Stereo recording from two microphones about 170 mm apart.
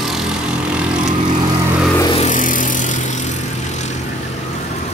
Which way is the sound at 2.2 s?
50° left (ahead or behind).